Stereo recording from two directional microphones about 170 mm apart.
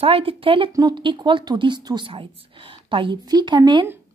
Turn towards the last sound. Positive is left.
turn(degrees=-30)  # may be behind; listen again after turning